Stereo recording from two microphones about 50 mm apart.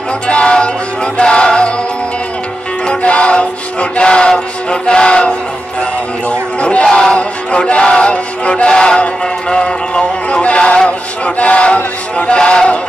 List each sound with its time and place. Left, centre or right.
0.3 s music: left
2.9 s music: left
3.9 s a sound: centre